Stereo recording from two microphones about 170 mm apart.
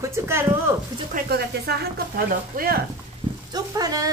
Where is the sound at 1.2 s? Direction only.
70° right (ahead or behind).